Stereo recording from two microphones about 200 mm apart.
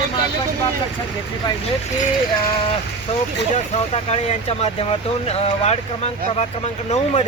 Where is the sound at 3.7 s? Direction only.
30° left (ahead or behind).